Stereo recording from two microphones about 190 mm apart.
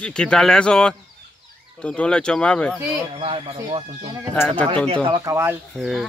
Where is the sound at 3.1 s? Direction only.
30° right (ahead or behind).